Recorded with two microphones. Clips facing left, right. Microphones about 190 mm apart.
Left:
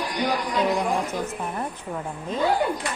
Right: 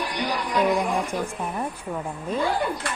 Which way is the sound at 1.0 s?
10° right (ahead or behind).